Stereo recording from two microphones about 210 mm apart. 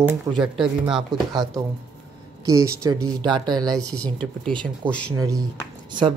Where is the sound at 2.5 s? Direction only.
15° right (ahead or behind).